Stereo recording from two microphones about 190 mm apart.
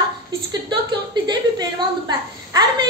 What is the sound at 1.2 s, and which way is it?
Speech, 20° right (ahead or behind).